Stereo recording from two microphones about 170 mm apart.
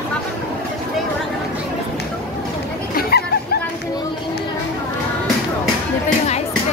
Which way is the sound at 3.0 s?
65° left (ahead or behind).